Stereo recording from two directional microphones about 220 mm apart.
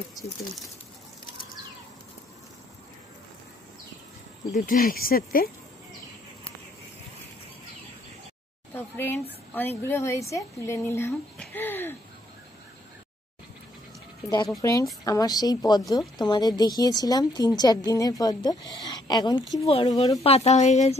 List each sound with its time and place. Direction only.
4.5 s speech: 40° left (ahead or behind)
8.7 s a woman's voice: 10° left (ahead or behind)
14.6 s a woman's voice: 15° left (ahead or behind); by 21.0 s 30° left (ahead or behind)